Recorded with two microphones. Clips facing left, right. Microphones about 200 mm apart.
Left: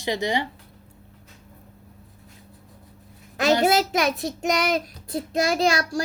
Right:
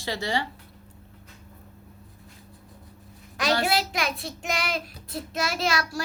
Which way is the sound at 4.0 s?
45° left (ahead or behind).